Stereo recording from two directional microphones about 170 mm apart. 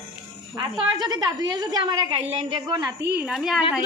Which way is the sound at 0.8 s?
25° right (ahead or behind).